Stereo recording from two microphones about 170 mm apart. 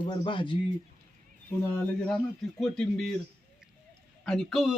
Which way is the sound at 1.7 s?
5° left (ahead or behind).